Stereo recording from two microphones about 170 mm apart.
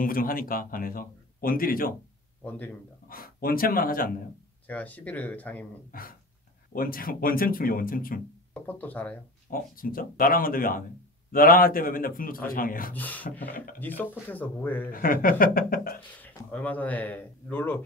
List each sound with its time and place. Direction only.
0.0 s speech: 55° left (ahead or behind)
3.1 s speech: 60° left (ahead or behind)
4.6 s speech: 10° left (ahead or behind)
5.9 s speech: 55° left (ahead or behind)
8.6 s speech: 10° left (ahead or behind)
9.5 s speech: 55° left (ahead or behind)
12.9 s speech: 10° left (ahead or behind)
14.9 s speech: 55° left (ahead or behind)
16.2 s speech: 10° left (ahead or behind)